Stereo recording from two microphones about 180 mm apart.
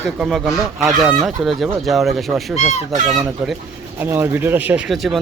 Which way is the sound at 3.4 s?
5° right (ahead or behind).